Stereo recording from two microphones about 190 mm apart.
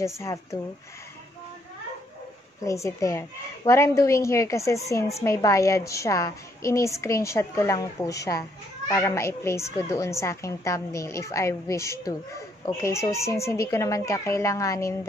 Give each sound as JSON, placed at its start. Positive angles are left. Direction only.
{"t": 0.0, "sound": "a woman's voice", "side_deg": 15}
{"t": 2.6, "sound": "a woman's voice", "side_deg": 15}